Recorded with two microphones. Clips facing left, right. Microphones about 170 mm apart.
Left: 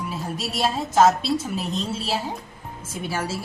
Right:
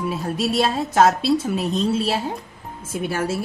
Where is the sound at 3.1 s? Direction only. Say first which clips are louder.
Right 4 dB; 55° right (ahead or behind).